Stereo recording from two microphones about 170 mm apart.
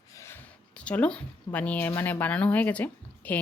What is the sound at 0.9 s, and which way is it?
Speech, 5° left (ahead or behind).